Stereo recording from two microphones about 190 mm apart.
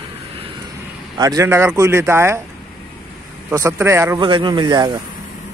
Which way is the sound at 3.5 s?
15° right (ahead or behind).